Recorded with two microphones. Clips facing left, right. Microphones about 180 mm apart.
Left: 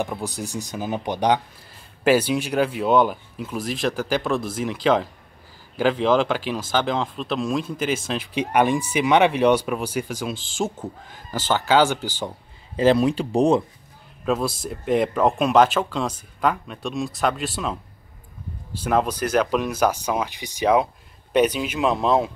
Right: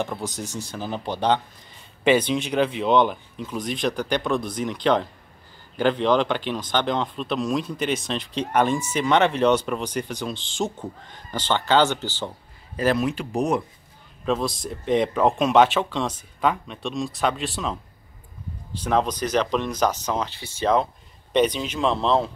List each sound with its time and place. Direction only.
0.0 s speech: 10° left (ahead or behind)
12.7 s speech: 30° left (ahead or behind)
14.2 s speech: 5° left (ahead or behind)